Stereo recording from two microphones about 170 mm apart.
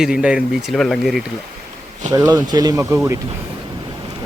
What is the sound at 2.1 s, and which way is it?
Speech, 25° right (ahead or behind).